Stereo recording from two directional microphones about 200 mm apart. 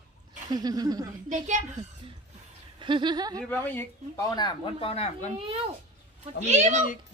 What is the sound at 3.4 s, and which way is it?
Speech, 10° left (ahead or behind).